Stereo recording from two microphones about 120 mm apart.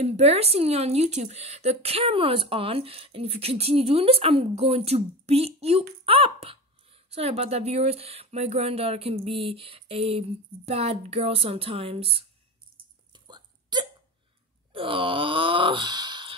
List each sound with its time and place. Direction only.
0.0 s a woman's voice: 65° right (ahead or behind)
13.1 s a sound: 35° right (ahead or behind)
14.7 s wail: 45° right (ahead or behind)